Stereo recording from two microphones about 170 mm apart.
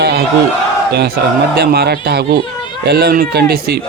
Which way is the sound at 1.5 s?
70° right (ahead or behind).